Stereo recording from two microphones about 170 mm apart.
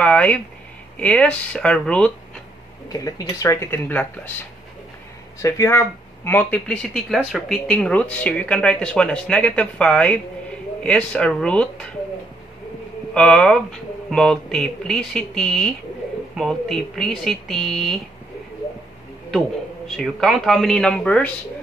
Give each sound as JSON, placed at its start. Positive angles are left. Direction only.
{"t": 0.0, "sound": "speech", "side_deg": 5}
{"t": 2.9, "sound": "speech", "side_deg": 20}
{"t": 5.4, "sound": "speech", "side_deg": 15}
{"t": 13.1, "sound": "speech", "side_deg": 5}
{"t": 20.0, "sound": "speech", "side_deg": 0}